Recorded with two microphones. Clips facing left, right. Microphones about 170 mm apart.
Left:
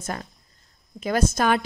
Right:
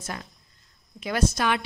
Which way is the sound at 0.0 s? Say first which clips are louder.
Left 4 dB; 45° left (ahead or behind).